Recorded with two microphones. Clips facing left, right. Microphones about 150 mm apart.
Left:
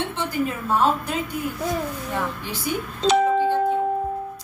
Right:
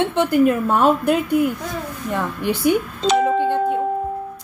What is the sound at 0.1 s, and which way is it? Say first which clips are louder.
A woman's voice: right 10 dB; 60° right (ahead or behind).